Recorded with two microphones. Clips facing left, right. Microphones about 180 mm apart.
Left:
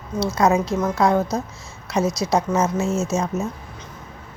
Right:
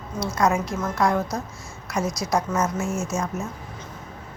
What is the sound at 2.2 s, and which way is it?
Speech, 20° left (ahead or behind).